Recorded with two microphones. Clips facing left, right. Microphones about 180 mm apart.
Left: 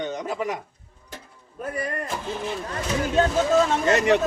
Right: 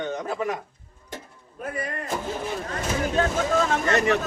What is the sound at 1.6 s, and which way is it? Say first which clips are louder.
Speech: left 2 dB; 40° left (ahead or behind).